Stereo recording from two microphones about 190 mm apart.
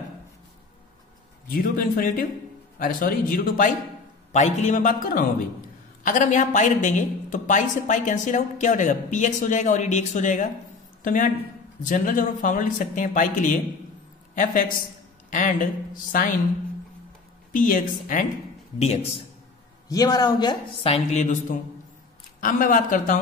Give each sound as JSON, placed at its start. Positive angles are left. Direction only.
{"t": 1.5, "sound": "a woman's voice", "side_deg": 45}
{"t": 17.5, "sound": "speech", "side_deg": 45}
{"t": 18.8, "sound": "a woman's voice", "side_deg": 35}
{"t": 19.9, "sound": "a woman's voice", "side_deg": 20}